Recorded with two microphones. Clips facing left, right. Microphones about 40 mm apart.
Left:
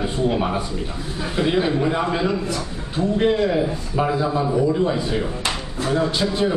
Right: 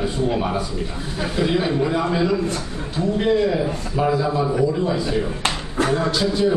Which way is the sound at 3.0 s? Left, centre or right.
Centre.